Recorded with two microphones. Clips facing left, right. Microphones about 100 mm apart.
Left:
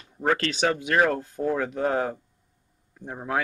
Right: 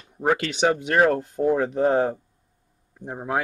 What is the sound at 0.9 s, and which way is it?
Speech, 40° right (ahead or behind).